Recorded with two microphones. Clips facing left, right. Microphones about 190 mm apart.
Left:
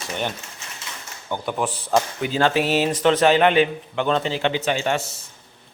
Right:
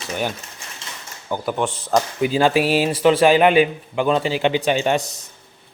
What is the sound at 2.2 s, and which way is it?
A man's voice, 10° right (ahead or behind).